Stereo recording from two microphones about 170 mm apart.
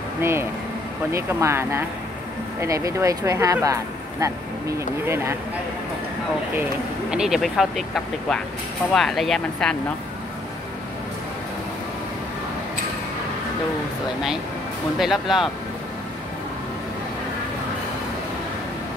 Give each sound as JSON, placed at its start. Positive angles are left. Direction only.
{"t": 0.2, "sound": "speech", "side_deg": -15}
{"t": 7.1, "sound": "speech", "side_deg": -5}
{"t": 15.0, "sound": "speech", "side_deg": 0}